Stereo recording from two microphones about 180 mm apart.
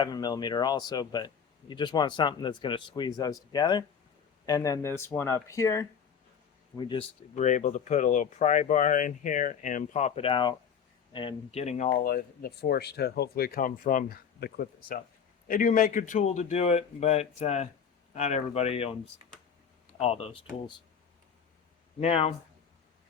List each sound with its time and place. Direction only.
0.0 s speech: 20° left (ahead or behind)
6.7 s a man's voice: 25° left (ahead or behind)
12.0 s a man's voice: 60° left (ahead or behind); by 18.9 s 35° left (ahead or behind)
20.0 s a man's voice: 35° left (ahead or behind)
22.0 s a man's voice: 35° left (ahead or behind)